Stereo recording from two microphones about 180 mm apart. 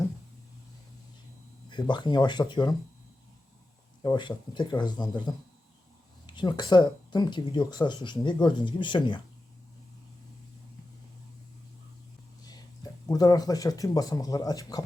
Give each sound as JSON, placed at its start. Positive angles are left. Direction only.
{"t": 1.7, "sound": "speech", "side_deg": 25}
{"t": 4.0, "sound": "speech", "side_deg": 25}
{"t": 12.5, "sound": "speech", "side_deg": 20}